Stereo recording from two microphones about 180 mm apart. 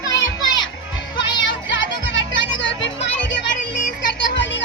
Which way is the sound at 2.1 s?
90° left.